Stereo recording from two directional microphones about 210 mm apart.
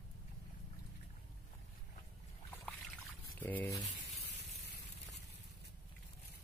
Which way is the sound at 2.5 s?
5° left (ahead or behind).